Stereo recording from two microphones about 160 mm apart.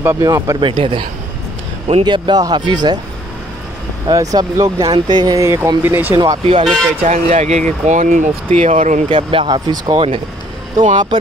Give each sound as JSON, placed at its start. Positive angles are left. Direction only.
{"t": 0.0, "sound": "speech", "side_deg": -20}
{"t": 4.1, "sound": "speech", "side_deg": -20}
{"t": 6.4, "sound": "speech", "side_deg": -40}
{"t": 9.1, "sound": "speech", "side_deg": -35}